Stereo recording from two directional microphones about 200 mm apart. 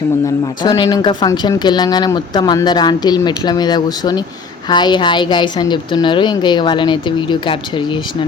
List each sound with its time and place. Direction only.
0.6 s speech: 20° left (ahead or behind)